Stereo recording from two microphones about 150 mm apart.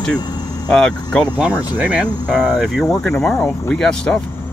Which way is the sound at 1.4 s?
10° right (ahead or behind).